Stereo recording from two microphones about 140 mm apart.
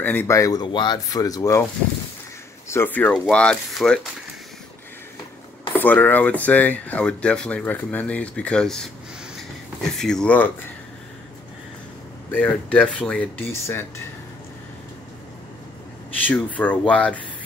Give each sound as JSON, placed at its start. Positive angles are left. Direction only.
{"t": 0.0, "sound": "speech", "side_deg": 15}
{"t": 2.7, "sound": "speech", "side_deg": 15}
{"t": 5.7, "sound": "speech", "side_deg": 15}
{"t": 9.9, "sound": "speech", "side_deg": 5}
{"t": 12.3, "sound": "speech", "side_deg": 10}
{"t": 16.3, "sound": "speech", "side_deg": 10}